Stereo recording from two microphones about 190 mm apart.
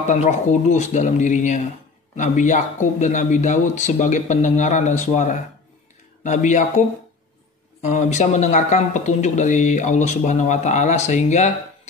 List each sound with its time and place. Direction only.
0.0 s speech: 40° left (ahead or behind)
7.8 s speech: 40° left (ahead or behind)